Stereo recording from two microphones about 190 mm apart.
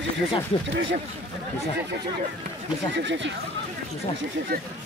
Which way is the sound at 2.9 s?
75° right (ahead or behind).